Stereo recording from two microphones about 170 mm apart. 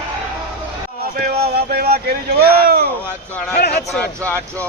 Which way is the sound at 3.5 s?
70° left (ahead or behind).